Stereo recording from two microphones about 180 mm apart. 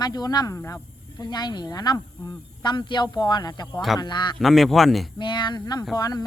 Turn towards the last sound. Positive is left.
turn(degrees=20)  # may be behind; listen again after turning